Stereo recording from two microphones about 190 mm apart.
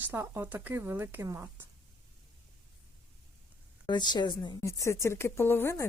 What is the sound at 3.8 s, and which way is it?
A woman's voice, 20° left (ahead or behind).